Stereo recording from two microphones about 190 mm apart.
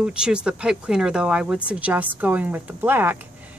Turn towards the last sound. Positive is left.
turn(degrees=-10)  # may be behind; listen again after turning